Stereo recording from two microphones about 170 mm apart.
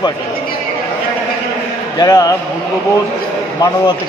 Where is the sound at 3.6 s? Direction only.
25° left (ahead or behind).